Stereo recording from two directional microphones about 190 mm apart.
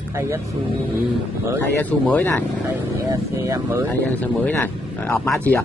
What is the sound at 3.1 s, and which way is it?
Speech, 20° right (ahead or behind).